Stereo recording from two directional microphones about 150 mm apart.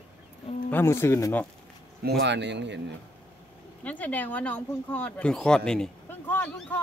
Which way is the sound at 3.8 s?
10° left (ahead or behind).